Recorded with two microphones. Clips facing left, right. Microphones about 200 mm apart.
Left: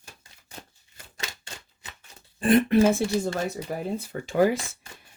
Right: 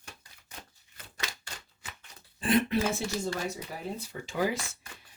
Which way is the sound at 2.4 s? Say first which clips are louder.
Left 8 dB; 50° left (ahead or behind).